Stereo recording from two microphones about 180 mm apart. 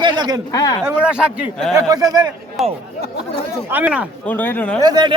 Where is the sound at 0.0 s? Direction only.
25° right (ahead or behind).